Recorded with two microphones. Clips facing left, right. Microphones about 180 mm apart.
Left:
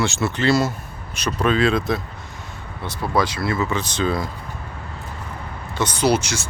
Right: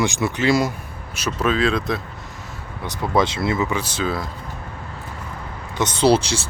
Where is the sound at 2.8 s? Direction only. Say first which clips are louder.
Right 2 dB; 20° right (ahead or behind).